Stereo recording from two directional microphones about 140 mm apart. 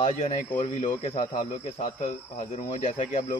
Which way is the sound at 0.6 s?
60° left (ahead or behind).